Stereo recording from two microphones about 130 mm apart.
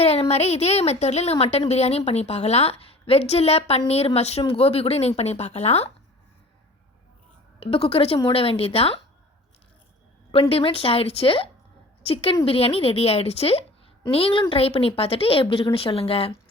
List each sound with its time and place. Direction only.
0.0 s a woman's voice: 55° left (ahead or behind)
7.6 s a woman's voice: 45° left (ahead or behind)
10.5 s a woman's voice: 45° left (ahead or behind)